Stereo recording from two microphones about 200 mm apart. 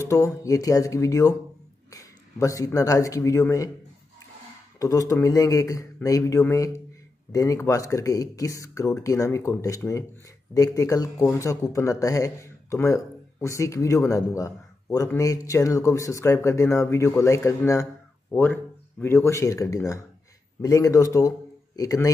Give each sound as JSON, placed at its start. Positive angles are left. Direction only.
{"t": 0.1, "sound": "a man's voice", "side_deg": 15}
{"t": 4.7, "sound": "speech", "side_deg": 15}